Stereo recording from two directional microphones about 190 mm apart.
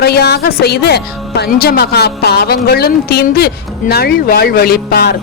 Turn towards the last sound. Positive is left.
turn(degrees=55)  # may be behind; listen again after turning